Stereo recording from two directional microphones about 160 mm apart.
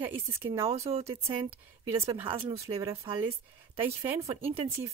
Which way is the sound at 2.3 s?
30° right (ahead or behind).